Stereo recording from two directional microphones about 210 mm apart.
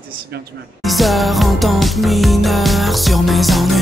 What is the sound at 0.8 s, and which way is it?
Music, centre (ahead or behind).